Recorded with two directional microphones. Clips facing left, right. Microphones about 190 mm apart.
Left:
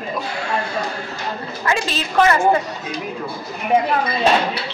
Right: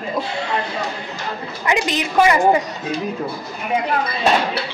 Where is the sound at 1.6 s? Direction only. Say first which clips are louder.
Right 2 dB; 15° right (ahead or behind).